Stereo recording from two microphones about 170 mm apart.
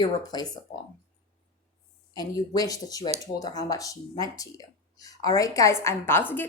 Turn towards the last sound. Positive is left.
turn(degrees=10)  # may be behind; listen again after turning